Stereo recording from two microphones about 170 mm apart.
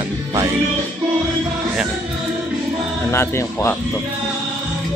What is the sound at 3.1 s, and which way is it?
Speech, 15° left (ahead or behind).